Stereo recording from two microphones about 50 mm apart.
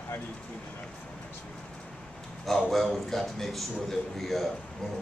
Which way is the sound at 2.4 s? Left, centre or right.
Centre.